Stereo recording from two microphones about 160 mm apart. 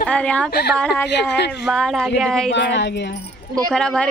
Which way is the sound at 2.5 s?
90° left.